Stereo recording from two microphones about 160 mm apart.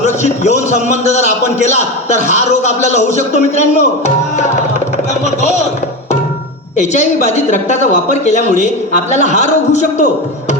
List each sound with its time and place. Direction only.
0.0 s speech: 45° left (ahead or behind)
6.7 s speech: 45° left (ahead or behind)